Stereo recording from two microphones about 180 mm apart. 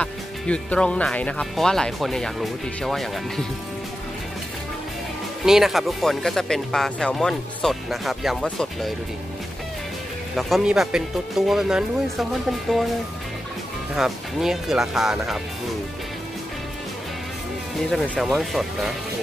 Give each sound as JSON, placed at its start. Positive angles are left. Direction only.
{"t": 0.0, "sound": "speech", "side_deg": 5}
{"t": 5.4, "sound": "speech", "side_deg": 0}
{"t": 10.3, "sound": "speech", "side_deg": 0}
{"t": 13.9, "sound": "speech", "side_deg": 0}
{"t": 17.9, "sound": "speech", "side_deg": 0}